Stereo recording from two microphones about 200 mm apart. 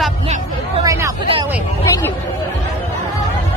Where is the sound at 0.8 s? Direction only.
15° right (ahead or behind).